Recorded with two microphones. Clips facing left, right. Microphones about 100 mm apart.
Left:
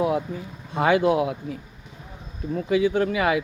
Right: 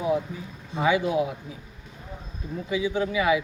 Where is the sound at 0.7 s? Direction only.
55° left (ahead or behind).